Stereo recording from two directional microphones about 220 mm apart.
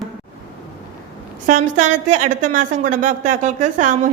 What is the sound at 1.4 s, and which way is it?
A woman's voice, 35° right (ahead or behind).